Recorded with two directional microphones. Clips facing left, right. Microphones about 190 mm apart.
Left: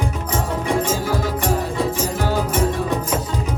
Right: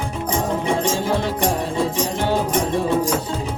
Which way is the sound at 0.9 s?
25° right (ahead or behind).